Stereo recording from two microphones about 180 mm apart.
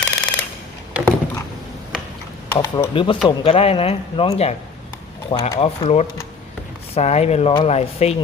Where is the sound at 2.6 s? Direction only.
25° left (ahead or behind).